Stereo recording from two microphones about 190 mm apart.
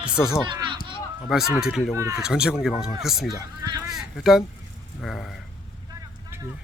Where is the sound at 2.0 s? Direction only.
15° right (ahead or behind).